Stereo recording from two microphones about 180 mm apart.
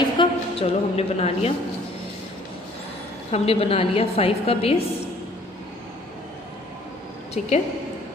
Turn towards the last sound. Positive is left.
turn(degrees=35)  # may be behind; listen again after turning